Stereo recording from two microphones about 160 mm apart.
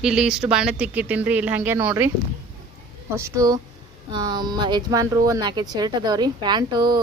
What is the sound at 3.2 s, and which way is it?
A woman's voice, 20° right (ahead or behind).